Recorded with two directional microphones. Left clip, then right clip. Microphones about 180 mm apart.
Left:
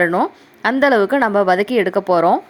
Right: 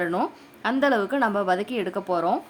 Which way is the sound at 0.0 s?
25° left (ahead or behind).